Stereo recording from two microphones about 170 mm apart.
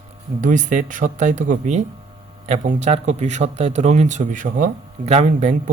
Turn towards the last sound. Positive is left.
turn(degrees=-45)  # may be behind; listen again after turning